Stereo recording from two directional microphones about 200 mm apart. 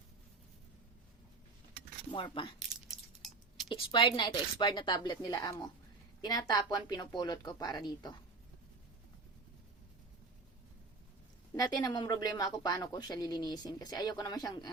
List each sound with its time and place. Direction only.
2.1 s a woman's voice: 25° left (ahead or behind)
2.6 s a sound: centre (ahead or behind)
3.7 s a woman's voice: 25° left (ahead or behind)
11.5 s a woman's voice: 20° left (ahead or behind)